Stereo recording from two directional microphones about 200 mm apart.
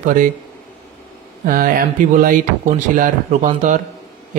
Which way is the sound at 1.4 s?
45° right (ahead or behind).